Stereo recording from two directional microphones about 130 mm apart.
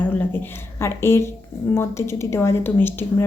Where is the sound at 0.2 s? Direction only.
15° left (ahead or behind).